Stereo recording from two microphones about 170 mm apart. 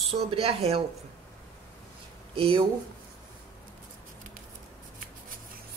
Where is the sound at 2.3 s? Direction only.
35° right (ahead or behind).